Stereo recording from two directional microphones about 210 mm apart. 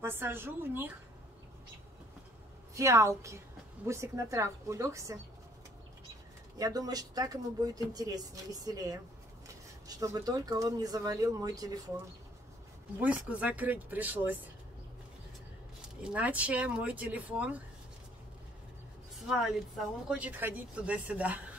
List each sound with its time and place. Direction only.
0.0 s speech: 10° right (ahead or behind)
2.7 s speech: 15° right (ahead or behind)
6.6 s speech: 15° right (ahead or behind)
13.0 s speech: 5° right (ahead or behind)
16.0 s speech: 5° right (ahead or behind)
19.2 s speech: centre (ahead or behind)